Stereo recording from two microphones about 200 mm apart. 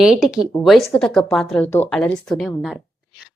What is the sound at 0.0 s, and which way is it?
A woman's voice, 5° right (ahead or behind).